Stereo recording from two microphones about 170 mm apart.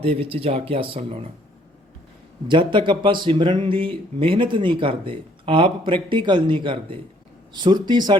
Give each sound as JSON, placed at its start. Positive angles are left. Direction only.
{"t": 0.0, "sound": "speech", "side_deg": -35}
{"t": 2.5, "sound": "speech", "side_deg": -30}